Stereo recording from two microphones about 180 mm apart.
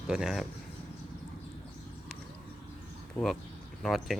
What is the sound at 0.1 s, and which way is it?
Speech, 5° right (ahead or behind).